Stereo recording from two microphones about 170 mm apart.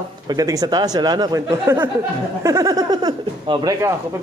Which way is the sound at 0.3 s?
20° right (ahead or behind).